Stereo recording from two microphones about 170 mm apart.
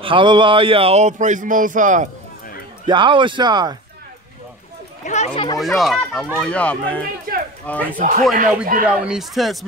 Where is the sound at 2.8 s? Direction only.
30° right (ahead or behind).